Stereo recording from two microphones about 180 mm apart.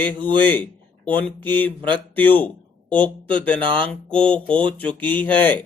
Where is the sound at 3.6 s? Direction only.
30° right (ahead or behind).